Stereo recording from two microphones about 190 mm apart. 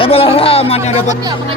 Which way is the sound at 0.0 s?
30° left (ahead or behind).